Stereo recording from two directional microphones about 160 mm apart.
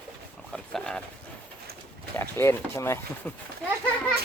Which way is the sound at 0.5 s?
5° left (ahead or behind).